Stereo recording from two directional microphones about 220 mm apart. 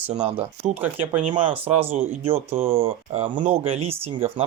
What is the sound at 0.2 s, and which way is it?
Speech, 25° right (ahead or behind).